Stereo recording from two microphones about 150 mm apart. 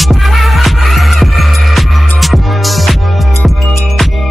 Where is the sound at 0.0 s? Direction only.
Centre (ahead or behind).